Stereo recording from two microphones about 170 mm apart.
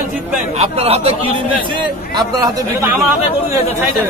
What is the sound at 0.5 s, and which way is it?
Speech, 35° right (ahead or behind).